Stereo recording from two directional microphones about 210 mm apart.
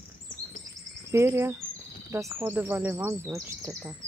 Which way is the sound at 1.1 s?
15° right (ahead or behind).